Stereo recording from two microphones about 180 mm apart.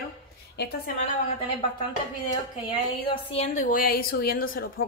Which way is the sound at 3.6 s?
55° left (ahead or behind).